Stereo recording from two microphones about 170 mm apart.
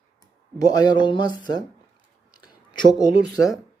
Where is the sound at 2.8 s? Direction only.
90° right.